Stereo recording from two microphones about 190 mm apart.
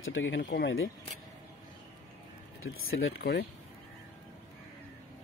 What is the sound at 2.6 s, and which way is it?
Speech, 90° left.